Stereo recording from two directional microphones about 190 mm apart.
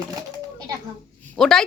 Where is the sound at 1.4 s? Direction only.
Centre (ahead or behind).